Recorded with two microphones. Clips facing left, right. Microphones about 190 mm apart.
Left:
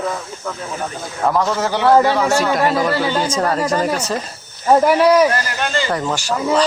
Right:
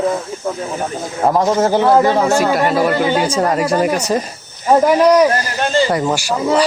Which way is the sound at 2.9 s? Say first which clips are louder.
Right 3 dB; 15° right (ahead or behind).